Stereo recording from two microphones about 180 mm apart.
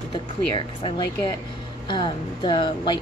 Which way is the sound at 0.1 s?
30° left (ahead or behind).